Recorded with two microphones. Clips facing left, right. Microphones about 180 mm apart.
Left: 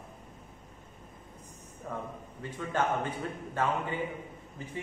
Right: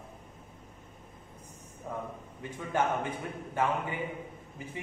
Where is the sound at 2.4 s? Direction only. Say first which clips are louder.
Right 1 dB; 15° right (ahead or behind).